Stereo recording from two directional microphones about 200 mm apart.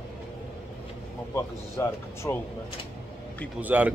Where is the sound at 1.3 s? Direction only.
15° left (ahead or behind).